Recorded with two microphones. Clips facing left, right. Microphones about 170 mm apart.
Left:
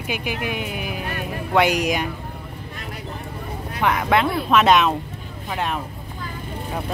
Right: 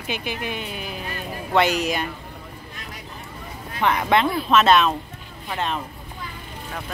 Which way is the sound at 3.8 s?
5° left (ahead or behind).